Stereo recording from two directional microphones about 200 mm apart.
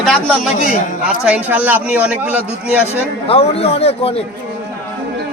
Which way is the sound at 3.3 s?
30° left (ahead or behind).